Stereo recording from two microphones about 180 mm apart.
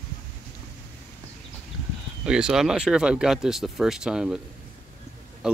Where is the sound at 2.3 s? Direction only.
5° right (ahead or behind).